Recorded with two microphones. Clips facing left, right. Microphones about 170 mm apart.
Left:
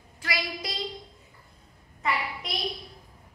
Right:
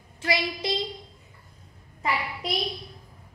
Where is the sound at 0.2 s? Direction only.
25° right (ahead or behind).